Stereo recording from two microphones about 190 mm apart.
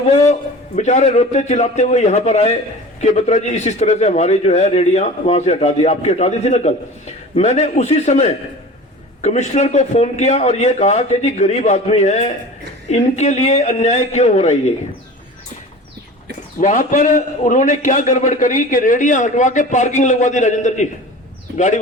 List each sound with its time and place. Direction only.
0.8 s a man's voice: 40° left (ahead or behind)
16.6 s a man's voice: 40° left (ahead or behind)